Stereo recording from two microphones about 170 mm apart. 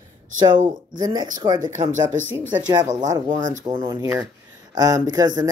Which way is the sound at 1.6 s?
50° right (ahead or behind).